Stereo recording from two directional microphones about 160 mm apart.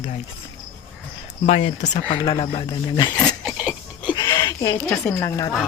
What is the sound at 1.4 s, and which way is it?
Speech, 45° left (ahead or behind).